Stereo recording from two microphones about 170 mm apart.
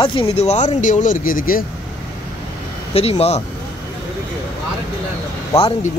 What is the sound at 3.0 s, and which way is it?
Speech, 35° left (ahead or behind).